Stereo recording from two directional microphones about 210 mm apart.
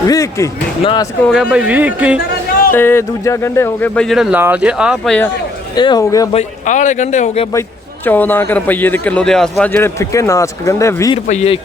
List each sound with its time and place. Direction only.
0.1 s a man's voice: 15° left (ahead or behind)
1.3 s speech: 5° right (ahead or behind)
2.7 s speech: 10° left (ahead or behind); by 5.1 s 5° right (ahead or behind)
5.7 s a man's voice: 20° left (ahead or behind)
6.3 s a man's voice: 35° left (ahead or behind)
8.0 s a man's voice: 10° left (ahead or behind)
11.3 s a man's voice: 30° left (ahead or behind)